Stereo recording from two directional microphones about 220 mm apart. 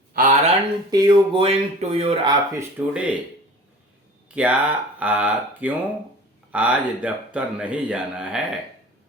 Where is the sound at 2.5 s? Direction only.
5° right (ahead or behind).